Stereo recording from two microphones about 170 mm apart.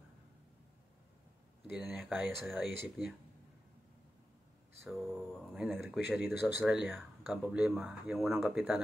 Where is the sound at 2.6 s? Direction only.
75° left (ahead or behind).